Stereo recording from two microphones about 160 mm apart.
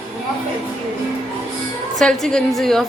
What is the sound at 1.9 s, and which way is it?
Speech, 5° left (ahead or behind).